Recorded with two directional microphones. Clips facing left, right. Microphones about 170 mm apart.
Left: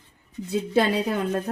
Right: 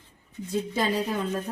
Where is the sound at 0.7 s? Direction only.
65° left (ahead or behind).